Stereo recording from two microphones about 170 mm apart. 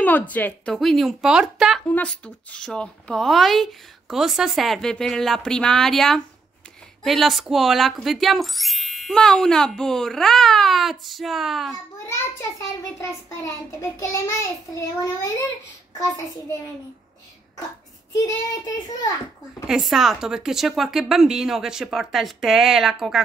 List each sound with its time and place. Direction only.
0.0 s speech: 10° left (ahead or behind)
13.4 s child singing: 15° left (ahead or behind)
18.1 s a child's voice: 20° left (ahead or behind)
19.7 s speech: centre (ahead or behind)